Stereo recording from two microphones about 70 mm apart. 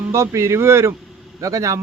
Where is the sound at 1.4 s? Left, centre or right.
Right.